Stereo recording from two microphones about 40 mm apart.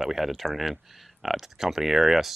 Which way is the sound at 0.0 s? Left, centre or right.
Centre.